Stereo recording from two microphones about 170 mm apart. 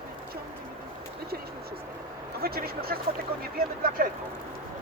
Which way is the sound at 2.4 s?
65° right (ahead or behind).